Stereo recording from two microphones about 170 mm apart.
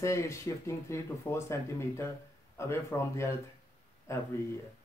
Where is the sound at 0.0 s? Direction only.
15° left (ahead or behind).